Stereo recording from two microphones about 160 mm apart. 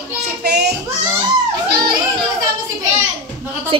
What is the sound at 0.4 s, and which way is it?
Child singing, 90° right.